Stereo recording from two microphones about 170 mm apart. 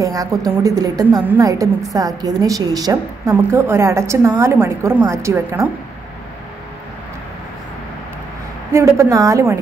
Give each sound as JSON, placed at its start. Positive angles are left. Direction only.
{"t": 0.0, "sound": "a woman's voice", "side_deg": -20}
{"t": 8.7, "sound": "a woman's voice", "side_deg": -20}